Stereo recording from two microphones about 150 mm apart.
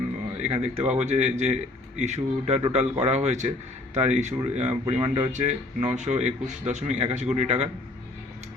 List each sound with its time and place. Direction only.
0.4 s a man's voice: 45° right (ahead or behind)
5.3 s a man's voice: 50° right (ahead or behind)